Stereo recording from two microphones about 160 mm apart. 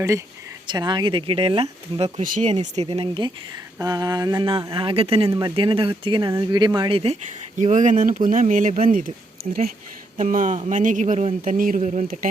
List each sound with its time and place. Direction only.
0.7 s speech: 30° right (ahead or behind)
2.2 s speech: 55° right (ahead or behind)
2.5 s speech: 45° right (ahead or behind)
5.3 s speech: 20° right (ahead or behind)
5.5 s speech: 35° right (ahead or behind)
7.6 s speech: 50° right (ahead or behind)